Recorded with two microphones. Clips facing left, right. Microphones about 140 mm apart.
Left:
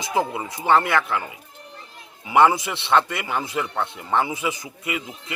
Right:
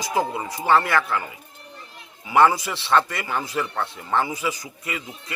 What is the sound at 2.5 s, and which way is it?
A man's voice, 20° left (ahead or behind).